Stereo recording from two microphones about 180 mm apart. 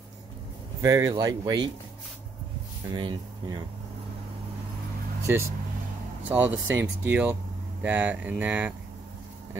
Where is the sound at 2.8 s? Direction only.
25° right (ahead or behind).